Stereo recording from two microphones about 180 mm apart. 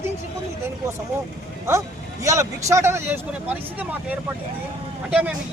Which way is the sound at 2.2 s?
20° right (ahead or behind).